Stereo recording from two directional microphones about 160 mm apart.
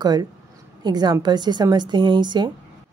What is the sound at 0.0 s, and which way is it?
A woman's voice, 25° right (ahead or behind).